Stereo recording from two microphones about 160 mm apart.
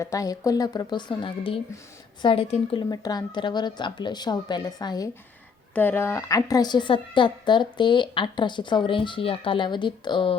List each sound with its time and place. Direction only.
0.0 s a woman's voice: 20° left (ahead or behind)
2.9 s a woman's voice: 25° left (ahead or behind)
5.7 s a woman's voice: 10° left (ahead or behind); by 10.3 s 30° left (ahead or behind)